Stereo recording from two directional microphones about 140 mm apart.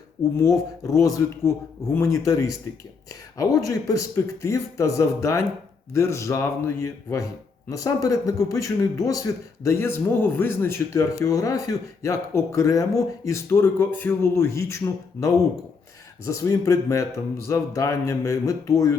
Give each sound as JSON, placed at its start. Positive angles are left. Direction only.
{"t": 0.3, "sound": "a man's voice", "side_deg": 25}